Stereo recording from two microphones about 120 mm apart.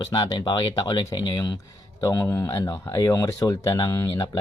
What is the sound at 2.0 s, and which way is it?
Speech, 25° left (ahead or behind).